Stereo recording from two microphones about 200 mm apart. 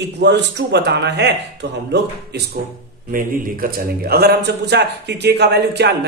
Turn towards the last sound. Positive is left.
turn(degrees=-55)  # may be behind; listen again after turning